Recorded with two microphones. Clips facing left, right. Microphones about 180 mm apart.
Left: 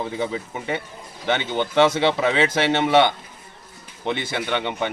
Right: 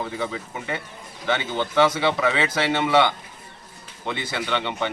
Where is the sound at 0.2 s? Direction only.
20° left (ahead or behind).